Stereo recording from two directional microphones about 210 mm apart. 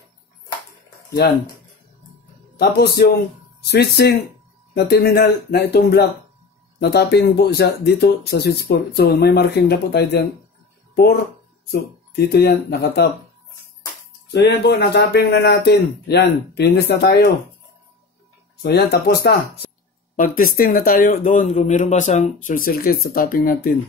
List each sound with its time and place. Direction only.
2.6 s speech: 50° left (ahead or behind)
12.3 s speech: 50° left (ahead or behind)
14.3 s speech: 55° left (ahead or behind)
18.6 s speech: 50° left (ahead or behind)